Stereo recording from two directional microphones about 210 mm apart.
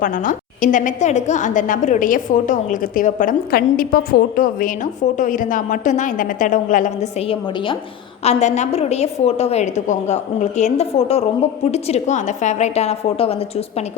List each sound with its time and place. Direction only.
0.0 s a woman's voice: 40° left (ahead or behind)